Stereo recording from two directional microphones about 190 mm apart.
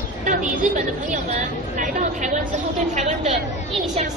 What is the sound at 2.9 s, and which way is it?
Speech, 35° right (ahead or behind).